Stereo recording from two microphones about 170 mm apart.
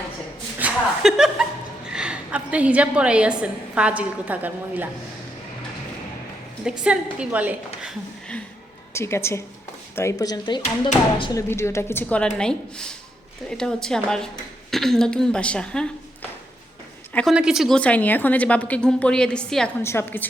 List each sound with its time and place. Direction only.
0.6 s a woman's voice: 5° right (ahead or behind)
6.7 s a woman's voice: 5° right (ahead or behind)
8.9 s a woman's voice: 15° left (ahead or behind)
17.1 s speech: 5° left (ahead or behind)
17.3 s a woman's voice: 5° right (ahead or behind)
19.8 s a woman's voice: 15° left (ahead or behind)